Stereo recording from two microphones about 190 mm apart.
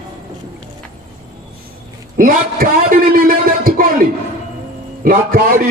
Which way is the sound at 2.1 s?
50° right (ahead or behind).